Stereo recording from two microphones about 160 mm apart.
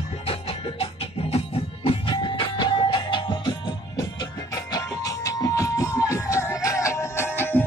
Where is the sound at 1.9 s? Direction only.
30° left (ahead or behind).